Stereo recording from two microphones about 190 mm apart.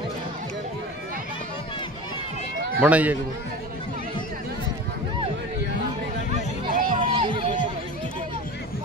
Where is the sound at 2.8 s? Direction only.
5° right (ahead or behind).